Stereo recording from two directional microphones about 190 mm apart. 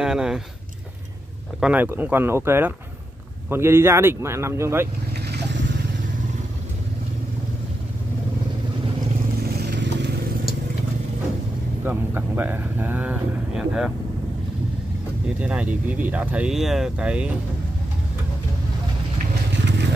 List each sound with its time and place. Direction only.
0.0 s speech: 5° right (ahead or behind)
1.6 s speech: 10° right (ahead or behind)
9.6 s vehicle: 60° right (ahead or behind)
11.8 s speech: 10° right (ahead or behind)
15.3 s speech: 5° right (ahead or behind)
19.5 s vehicle: 65° right (ahead or behind)